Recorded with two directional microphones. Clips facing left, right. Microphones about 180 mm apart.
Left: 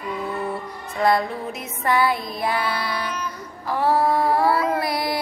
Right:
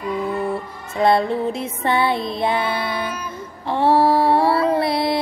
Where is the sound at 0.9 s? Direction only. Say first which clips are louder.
Right 4 dB; 25° right (ahead or behind).